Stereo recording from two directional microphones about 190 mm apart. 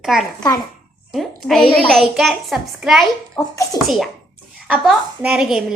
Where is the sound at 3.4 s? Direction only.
15° left (ahead or behind).